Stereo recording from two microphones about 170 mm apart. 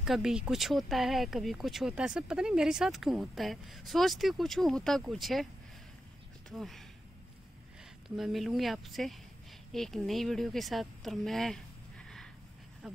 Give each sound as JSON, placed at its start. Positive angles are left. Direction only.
{"t": 0.0, "sound": "speech", "side_deg": -5}
{"t": 6.5, "sound": "speech", "side_deg": 0}
{"t": 8.2, "sound": "speech", "side_deg": 0}